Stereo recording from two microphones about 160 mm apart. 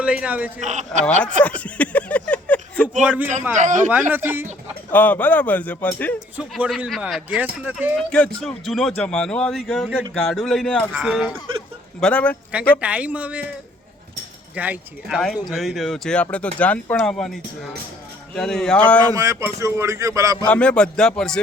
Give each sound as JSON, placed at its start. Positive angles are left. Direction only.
{"t": 0.0, "sound": "speech", "side_deg": -5}
{"t": 0.6, "sound": "speech", "side_deg": -45}
{"t": 1.5, "sound": "a sound", "side_deg": 10}
{"t": 3.0, "sound": "speech", "side_deg": -10}
{"t": 3.6, "sound": "speech", "side_deg": -50}
{"t": 4.1, "sound": "speech", "side_deg": -10}
{"t": 4.9, "sound": "speech", "side_deg": 10}
{"t": 6.3, "sound": "a man's voice", "side_deg": -5}
{"t": 7.9, "sound": "a man's voice", "side_deg": 5}
{"t": 12.8, "sound": "speech", "side_deg": -10}
{"t": 14.5, "sound": "a man's voice", "side_deg": -10}
{"t": 18.3, "sound": "a man's voice", "side_deg": 5}
{"t": 19.1, "sound": "speech", "side_deg": -20}
{"t": 20.5, "sound": "a man's voice", "side_deg": 5}